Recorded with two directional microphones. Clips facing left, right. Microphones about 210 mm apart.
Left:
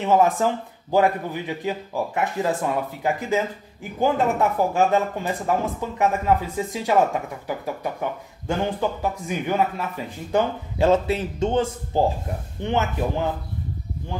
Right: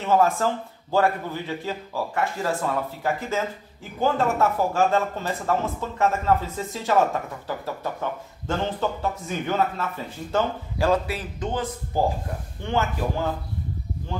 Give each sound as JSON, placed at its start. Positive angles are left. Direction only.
{"t": 0.0, "sound": "speech", "side_deg": 15}